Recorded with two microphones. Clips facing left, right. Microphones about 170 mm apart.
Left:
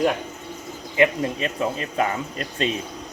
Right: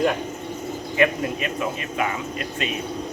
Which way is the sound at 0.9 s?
20° left (ahead or behind).